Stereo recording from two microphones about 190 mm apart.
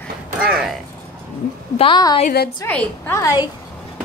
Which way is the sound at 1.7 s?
25° left (ahead or behind).